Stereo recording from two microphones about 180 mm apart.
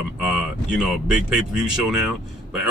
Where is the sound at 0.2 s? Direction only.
Centre (ahead or behind).